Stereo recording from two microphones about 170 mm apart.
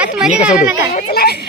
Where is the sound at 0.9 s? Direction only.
65° left (ahead or behind).